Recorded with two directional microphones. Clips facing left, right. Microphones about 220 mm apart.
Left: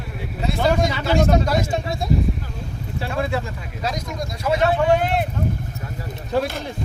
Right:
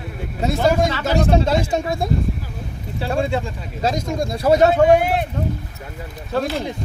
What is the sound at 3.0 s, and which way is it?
Speech, 30° right (ahead or behind).